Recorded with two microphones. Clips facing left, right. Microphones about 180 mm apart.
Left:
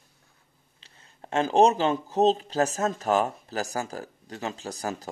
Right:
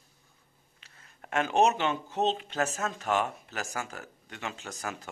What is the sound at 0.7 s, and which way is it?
Speech, 30° left (ahead or behind).